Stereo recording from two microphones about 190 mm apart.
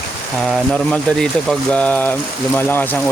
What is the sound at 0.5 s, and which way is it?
Speech, centre (ahead or behind).